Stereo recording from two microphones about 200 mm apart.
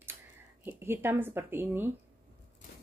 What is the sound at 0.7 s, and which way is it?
Speech, 10° right (ahead or behind).